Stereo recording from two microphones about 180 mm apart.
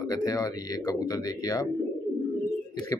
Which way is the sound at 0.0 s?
20° left (ahead or behind).